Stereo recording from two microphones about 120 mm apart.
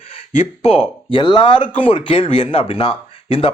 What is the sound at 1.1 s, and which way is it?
A man's voice, 45° left (ahead or behind).